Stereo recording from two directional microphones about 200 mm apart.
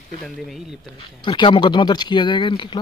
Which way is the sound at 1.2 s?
25° left (ahead or behind).